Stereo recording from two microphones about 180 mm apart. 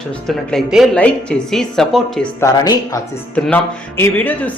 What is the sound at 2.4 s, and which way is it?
Speech, 20° left (ahead or behind).